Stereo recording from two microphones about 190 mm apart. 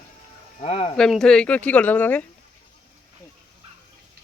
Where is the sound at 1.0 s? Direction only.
5° left (ahead or behind).